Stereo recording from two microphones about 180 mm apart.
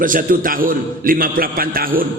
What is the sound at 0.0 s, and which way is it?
A man's voice, 50° right (ahead or behind).